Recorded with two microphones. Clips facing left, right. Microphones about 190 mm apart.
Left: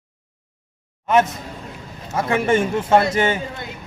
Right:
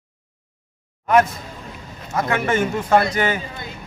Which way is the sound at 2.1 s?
30° left (ahead or behind).